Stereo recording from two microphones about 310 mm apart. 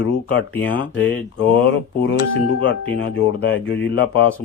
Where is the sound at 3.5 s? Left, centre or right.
Left.